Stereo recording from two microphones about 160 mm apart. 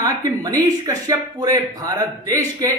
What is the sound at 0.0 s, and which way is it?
A woman's voice, 25° right (ahead or behind).